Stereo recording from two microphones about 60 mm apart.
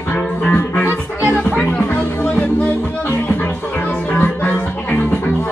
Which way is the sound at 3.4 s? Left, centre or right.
Left.